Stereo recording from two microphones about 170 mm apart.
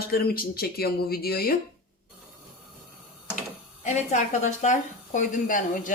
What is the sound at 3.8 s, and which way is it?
A woman's voice, 45° left (ahead or behind).